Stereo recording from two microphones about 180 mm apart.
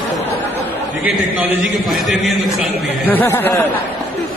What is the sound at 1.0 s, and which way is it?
A man's voice, 5° right (ahead or behind).